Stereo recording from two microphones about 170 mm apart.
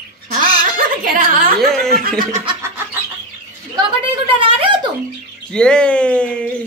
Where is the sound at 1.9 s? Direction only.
60° right (ahead or behind).